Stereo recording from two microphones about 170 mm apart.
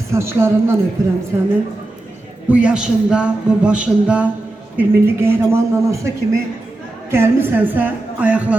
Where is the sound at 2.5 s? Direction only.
10° right (ahead or behind).